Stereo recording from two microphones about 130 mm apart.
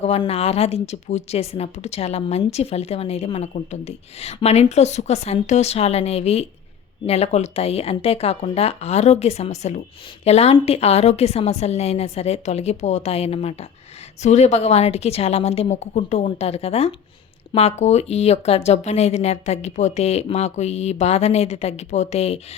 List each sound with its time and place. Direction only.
0.0 s speech: 50° left (ahead or behind)